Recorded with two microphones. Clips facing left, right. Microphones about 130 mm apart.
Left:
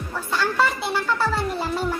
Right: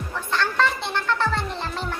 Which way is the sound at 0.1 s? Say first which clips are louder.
Left 1 dB; 5° left (ahead or behind).